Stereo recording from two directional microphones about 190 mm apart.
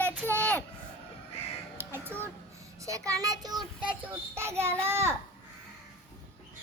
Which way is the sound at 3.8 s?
10° right (ahead or behind).